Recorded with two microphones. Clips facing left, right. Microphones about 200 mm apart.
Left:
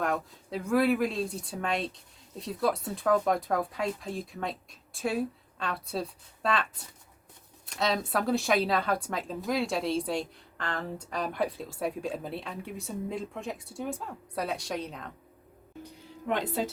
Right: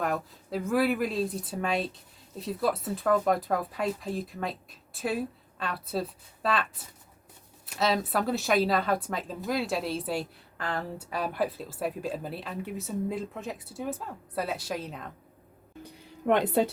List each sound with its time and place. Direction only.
0.0 s speech: centre (ahead or behind)
16.2 s speech: 60° right (ahead or behind)